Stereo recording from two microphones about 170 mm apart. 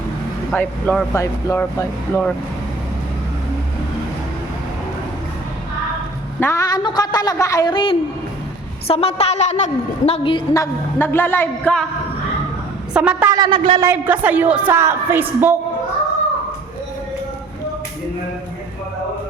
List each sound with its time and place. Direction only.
0.5 s speech: 10° left (ahead or behind)
6.4 s a woman's voice: 20° left (ahead or behind); by 9.6 s 40° left (ahead or behind)
10.1 s speech: 30° left (ahead or behind); by 11.9 s 10° left (ahead or behind)
12.9 s a woman's voice: 5° right (ahead or behind)
13.3 s a man's voice: 25° right (ahead or behind)
13.7 s a woman's voice: 15° right (ahead or behind)